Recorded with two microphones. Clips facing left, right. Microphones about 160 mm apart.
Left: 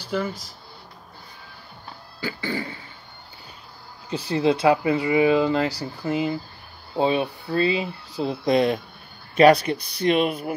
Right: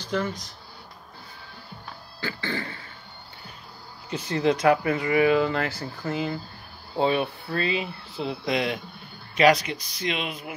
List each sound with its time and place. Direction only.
0.0 s speech: 10° left (ahead or behind)
2.1 s cough: 15° left (ahead or behind)
4.1 s speech: 30° left (ahead or behind); by 10.5 s 50° left (ahead or behind)